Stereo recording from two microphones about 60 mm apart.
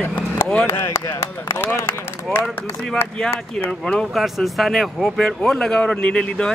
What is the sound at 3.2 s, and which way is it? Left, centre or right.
Speech, centre.